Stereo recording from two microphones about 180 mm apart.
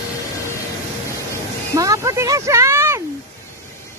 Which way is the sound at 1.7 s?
20° right (ahead or behind).